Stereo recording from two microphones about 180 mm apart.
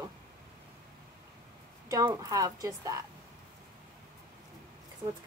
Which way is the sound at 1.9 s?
20° right (ahead or behind).